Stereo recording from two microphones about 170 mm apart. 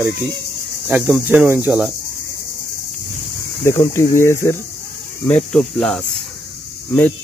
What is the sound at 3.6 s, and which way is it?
Speech, 15° left (ahead or behind).